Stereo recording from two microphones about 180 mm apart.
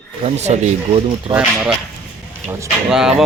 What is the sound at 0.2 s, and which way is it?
Speech, 35° right (ahead or behind).